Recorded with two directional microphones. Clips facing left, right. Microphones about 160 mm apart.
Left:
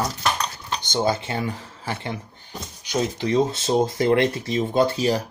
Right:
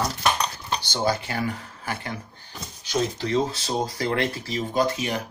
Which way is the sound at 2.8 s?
15° left (ahead or behind).